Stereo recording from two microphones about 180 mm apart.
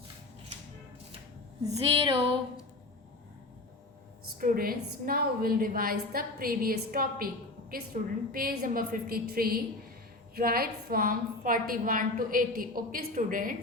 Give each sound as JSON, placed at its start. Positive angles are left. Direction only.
{"t": 1.6, "sound": "a sound", "side_deg": -30}
{"t": 4.4, "sound": "a woman's voice", "side_deg": -50}
{"t": 7.9, "sound": "a woman's voice", "side_deg": -40}
{"t": 8.3, "sound": "a woman's voice", "side_deg": -55}